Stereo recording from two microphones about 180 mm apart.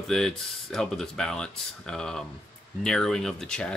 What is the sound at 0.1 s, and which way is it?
Speech, 5° left (ahead or behind).